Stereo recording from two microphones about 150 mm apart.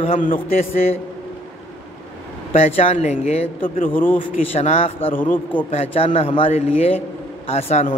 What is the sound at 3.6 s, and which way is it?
Speech, 65° left (ahead or behind).